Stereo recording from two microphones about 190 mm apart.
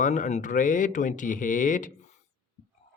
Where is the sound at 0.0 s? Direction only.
40° left (ahead or behind).